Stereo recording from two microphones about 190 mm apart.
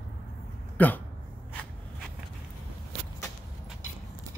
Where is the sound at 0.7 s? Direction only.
10° left (ahead or behind).